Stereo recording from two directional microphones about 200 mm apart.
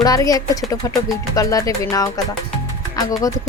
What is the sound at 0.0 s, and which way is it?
Speech, 20° left (ahead or behind).